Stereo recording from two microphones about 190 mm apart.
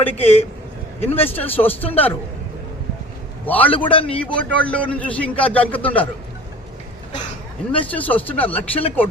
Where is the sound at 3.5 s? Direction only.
10° left (ahead or behind).